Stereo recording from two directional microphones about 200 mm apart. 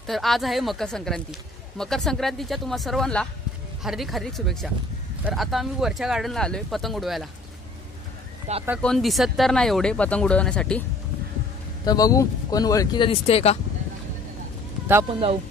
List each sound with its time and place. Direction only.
0.0 s speech: centre (ahead or behind)
8.5 s speech: 35° right (ahead or behind)
8.8 s speech: centre (ahead or behind)
11.8 s speech: 20° left (ahead or behind)
15.0 s speech: 25° right (ahead or behind)